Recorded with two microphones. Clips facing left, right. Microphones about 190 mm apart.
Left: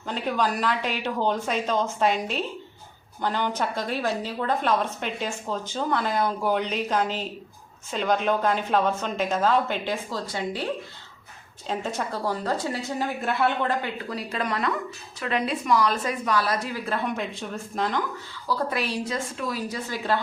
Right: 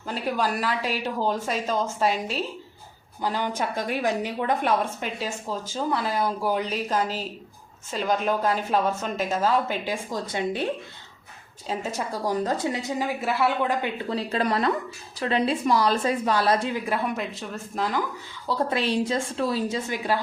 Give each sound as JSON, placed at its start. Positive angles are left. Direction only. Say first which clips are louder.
{"t": 0.1, "sound": "a woman's voice", "louder": "even", "side_deg": -5}
{"t": 11.7, "sound": "speech", "louder": "even", "side_deg": -5}
{"t": 13.1, "sound": "a woman's voice", "louder": "even", "side_deg": -5}
{"t": 17.1, "sound": "a woman's voice", "louder": "even", "side_deg": 0}
{"t": 18.4, "sound": "a woman's voice", "louder": "right 2 dB", "side_deg": -25}